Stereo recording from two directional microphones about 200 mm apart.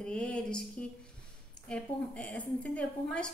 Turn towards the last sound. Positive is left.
turn(degrees=5)  # may be behind; listen again after turning